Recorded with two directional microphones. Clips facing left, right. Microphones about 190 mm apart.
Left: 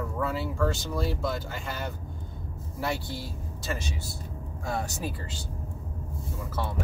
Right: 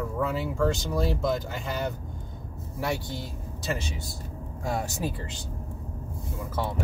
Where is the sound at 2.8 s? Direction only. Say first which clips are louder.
Right 1 dB; 20° right (ahead or behind).